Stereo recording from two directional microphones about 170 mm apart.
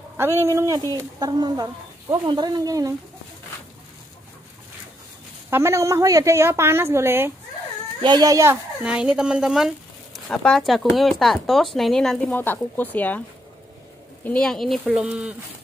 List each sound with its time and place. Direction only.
0.2 s speech: 15° right (ahead or behind)
5.5 s a woman's voice: 15° right (ahead or behind)
8.0 s speech: 25° right (ahead or behind)
8.8 s speech: 5° right (ahead or behind)
14.2 s speech: 5° left (ahead or behind)